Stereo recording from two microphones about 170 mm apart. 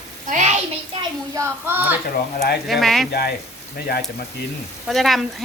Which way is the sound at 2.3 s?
70° left (ahead or behind).